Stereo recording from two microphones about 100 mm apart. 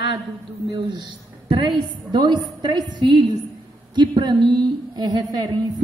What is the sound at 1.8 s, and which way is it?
A woman's voice, 50° right (ahead or behind).